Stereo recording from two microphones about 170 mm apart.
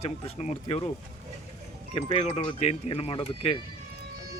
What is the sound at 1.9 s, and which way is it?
Speech, 35° left (ahead or behind).